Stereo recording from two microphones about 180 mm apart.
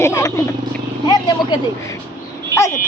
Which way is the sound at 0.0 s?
15° left (ahead or behind).